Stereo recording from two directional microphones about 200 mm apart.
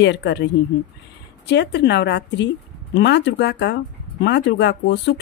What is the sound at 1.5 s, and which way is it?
Speech, 60° left (ahead or behind).